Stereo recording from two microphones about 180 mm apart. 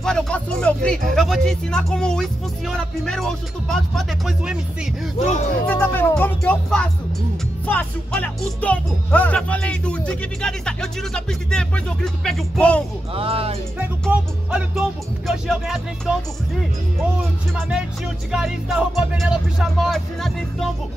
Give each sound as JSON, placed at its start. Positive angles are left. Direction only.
{"t": 0.0, "sound": "music", "side_deg": 5}
{"t": 5.2, "sound": "speech", "side_deg": 40}
{"t": 5.7, "sound": "speech", "side_deg": 10}
{"t": 7.6, "sound": "music", "side_deg": 10}
{"t": 13.1, "sound": "speech", "side_deg": -30}
{"t": 14.0, "sound": "music", "side_deg": 0}
{"t": 17.6, "sound": "music", "side_deg": -5}